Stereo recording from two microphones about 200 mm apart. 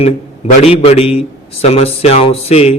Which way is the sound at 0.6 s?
30° left (ahead or behind).